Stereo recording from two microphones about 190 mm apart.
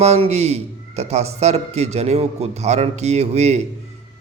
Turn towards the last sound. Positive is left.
turn(degrees=-35)  # may be behind; listen again after turning